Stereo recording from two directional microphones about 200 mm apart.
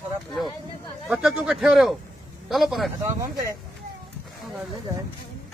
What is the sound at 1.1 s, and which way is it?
Speech, 5° right (ahead or behind).